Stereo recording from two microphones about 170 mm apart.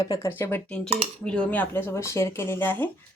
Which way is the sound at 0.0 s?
20° left (ahead or behind).